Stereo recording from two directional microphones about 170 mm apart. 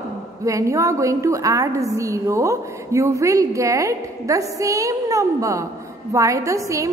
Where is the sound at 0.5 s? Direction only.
20° right (ahead or behind).